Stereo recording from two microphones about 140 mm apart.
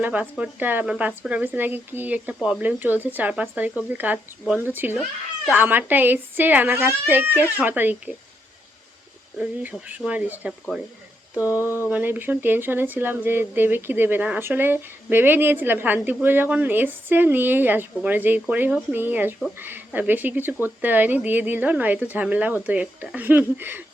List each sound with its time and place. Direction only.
0.0 s speech: 10° right (ahead or behind)
9.4 s speech: 10° right (ahead or behind)
11.3 s a sound: 20° left (ahead or behind)
11.9 s speech: 10° right (ahead or behind)